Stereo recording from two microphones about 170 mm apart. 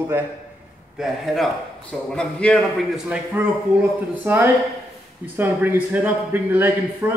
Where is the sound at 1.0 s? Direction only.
Centre (ahead or behind).